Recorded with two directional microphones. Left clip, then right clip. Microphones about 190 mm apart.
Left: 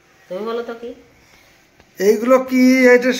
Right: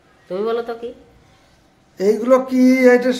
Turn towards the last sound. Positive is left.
turn(degrees=-5)  # may be behind; listen again after turning